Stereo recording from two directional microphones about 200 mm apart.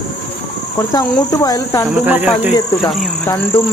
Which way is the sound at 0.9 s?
20° left (ahead or behind).